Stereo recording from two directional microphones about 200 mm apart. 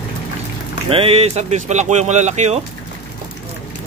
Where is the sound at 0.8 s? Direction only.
30° right (ahead or behind).